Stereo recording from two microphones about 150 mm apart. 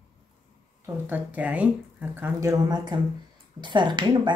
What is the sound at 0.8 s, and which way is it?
Speech, 15° right (ahead or behind).